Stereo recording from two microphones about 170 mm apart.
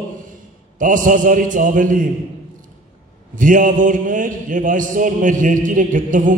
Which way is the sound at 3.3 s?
50° right (ahead or behind).